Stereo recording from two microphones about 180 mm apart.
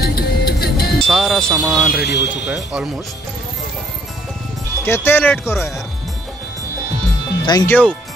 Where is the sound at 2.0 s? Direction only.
70° left (ahead or behind).